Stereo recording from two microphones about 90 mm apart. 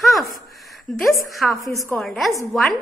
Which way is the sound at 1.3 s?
Centre (ahead or behind).